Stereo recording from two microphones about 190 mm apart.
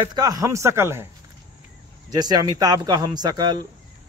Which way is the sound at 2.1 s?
20° right (ahead or behind).